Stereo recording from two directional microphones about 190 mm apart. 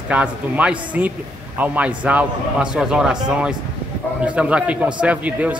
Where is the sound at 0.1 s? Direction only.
5° right (ahead or behind).